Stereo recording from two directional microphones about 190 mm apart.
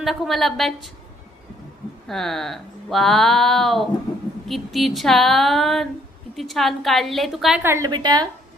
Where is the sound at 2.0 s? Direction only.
Centre (ahead or behind).